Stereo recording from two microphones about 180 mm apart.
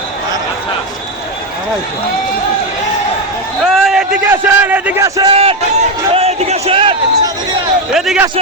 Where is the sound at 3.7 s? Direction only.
Centre (ahead or behind); by 5.3 s 20° right (ahead or behind).